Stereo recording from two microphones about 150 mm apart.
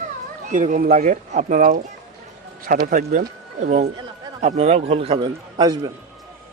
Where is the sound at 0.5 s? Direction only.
60° right (ahead or behind).